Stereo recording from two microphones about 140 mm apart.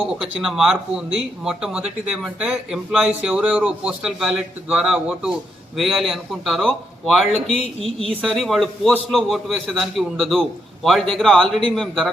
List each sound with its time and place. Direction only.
0.1 s a man's voice: 5° right (ahead or behind)